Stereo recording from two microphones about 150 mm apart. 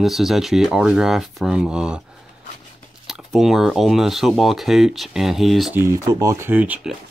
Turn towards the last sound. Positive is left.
turn(degrees=-10)  # may be behind; listen again after turning